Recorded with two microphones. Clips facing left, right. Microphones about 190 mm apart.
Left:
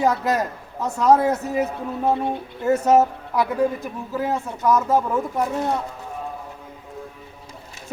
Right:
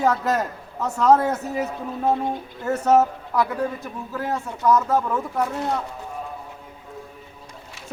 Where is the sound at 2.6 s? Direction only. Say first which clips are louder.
Left 2 dB; 15° left (ahead or behind).